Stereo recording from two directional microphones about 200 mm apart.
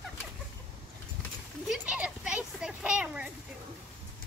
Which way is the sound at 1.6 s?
5° right (ahead or behind).